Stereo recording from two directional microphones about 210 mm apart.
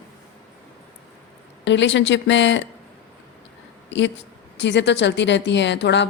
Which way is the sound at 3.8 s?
60° left (ahead or behind).